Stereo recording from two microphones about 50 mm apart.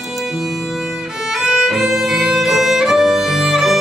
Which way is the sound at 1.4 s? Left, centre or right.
Centre.